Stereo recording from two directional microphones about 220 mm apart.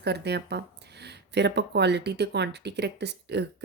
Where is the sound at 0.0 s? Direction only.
50° right (ahead or behind).